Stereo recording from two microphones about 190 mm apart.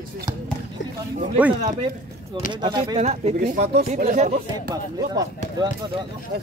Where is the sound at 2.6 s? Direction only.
25° right (ahead or behind).